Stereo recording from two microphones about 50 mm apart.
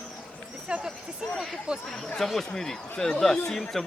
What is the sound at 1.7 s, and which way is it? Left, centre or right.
Speech, centre.